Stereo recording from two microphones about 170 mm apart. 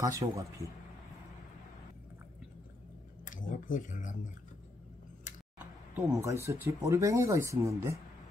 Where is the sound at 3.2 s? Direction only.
50° left (ahead or behind).